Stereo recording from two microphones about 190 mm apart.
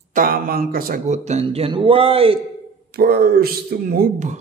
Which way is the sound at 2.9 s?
55° right (ahead or behind).